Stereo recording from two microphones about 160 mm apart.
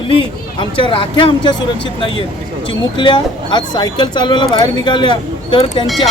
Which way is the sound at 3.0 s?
30° left (ahead or behind).